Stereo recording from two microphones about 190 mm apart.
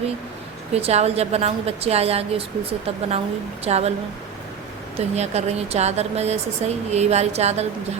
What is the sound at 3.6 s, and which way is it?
Speech, 35° right (ahead or behind).